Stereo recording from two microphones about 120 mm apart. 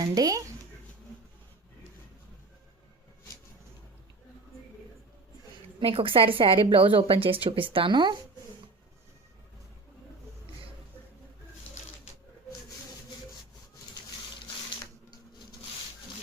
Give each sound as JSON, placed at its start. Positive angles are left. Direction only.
{"t": 0.0, "sound": "speech", "side_deg": -30}
{"t": 5.8, "sound": "a woman's voice", "side_deg": -50}